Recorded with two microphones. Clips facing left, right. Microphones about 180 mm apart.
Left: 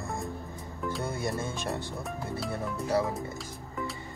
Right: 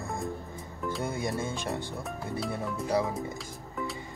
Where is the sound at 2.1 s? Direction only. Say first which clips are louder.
Right 1 dB; centre (ahead or behind).